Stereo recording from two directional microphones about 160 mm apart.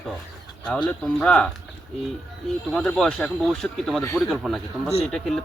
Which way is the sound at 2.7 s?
5° left (ahead or behind).